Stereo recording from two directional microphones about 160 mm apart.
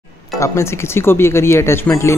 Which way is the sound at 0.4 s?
15° left (ahead or behind).